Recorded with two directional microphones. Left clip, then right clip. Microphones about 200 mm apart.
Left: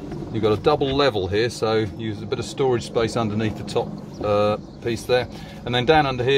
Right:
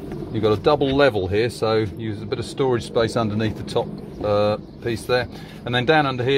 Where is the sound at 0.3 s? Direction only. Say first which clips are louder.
Right 1 dB; 20° right (ahead or behind).